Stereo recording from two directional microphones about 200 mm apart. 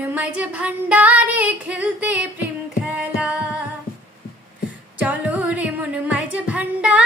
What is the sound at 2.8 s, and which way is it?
Singing, 5° right (ahead or behind).